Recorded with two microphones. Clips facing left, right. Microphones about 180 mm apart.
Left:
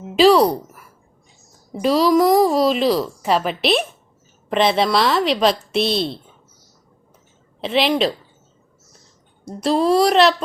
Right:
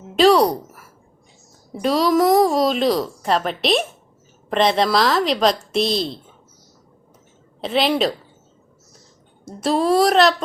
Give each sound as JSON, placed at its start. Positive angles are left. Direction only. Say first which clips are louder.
{"t": 0.2, "sound": "a woman's voice", "louder": "left 1 dB", "side_deg": 0}
{"t": 7.6, "sound": "a woman's voice", "louder": "left 1 dB", "side_deg": 0}
{"t": 9.4, "sound": "a woman's voice", "louder": "left 1 dB", "side_deg": 0}